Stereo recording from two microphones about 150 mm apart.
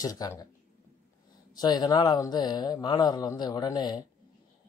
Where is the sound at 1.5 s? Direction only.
30° left (ahead or behind).